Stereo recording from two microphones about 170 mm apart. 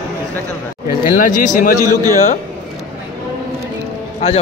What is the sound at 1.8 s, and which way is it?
Speech, 20° right (ahead or behind).